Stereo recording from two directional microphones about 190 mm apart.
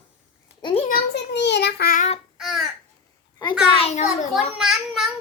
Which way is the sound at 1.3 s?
65° left (ahead or behind).